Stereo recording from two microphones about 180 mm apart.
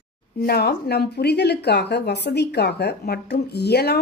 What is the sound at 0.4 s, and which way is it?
A woman's voice, 60° left (ahead or behind).